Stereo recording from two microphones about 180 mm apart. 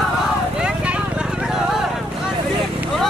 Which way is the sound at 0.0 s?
5° right (ahead or behind).